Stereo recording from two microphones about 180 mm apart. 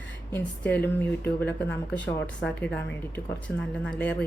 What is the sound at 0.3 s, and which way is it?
Speech, 10° left (ahead or behind).